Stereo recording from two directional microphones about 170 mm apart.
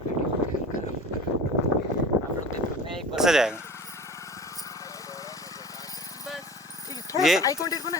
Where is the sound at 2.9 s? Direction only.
5° right (ahead or behind).